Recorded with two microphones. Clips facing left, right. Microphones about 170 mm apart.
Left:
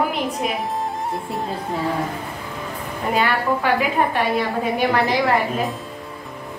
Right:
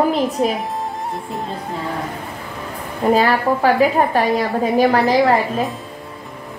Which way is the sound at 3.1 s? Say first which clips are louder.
Even; 35° right (ahead or behind).